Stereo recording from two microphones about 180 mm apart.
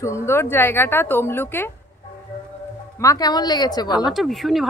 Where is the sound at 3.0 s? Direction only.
20° left (ahead or behind).